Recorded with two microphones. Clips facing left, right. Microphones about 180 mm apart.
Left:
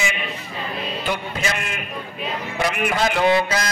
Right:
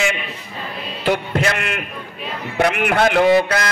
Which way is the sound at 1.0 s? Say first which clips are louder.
Right 9 dB; 65° right (ahead or behind).